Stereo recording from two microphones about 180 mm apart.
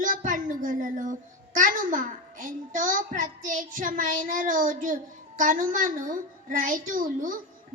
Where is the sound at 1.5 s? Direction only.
50° right (ahead or behind).